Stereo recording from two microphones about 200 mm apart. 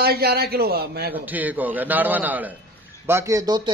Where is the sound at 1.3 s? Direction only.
10° right (ahead or behind).